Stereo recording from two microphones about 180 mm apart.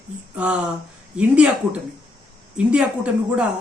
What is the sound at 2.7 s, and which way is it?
Speech, 5° right (ahead or behind).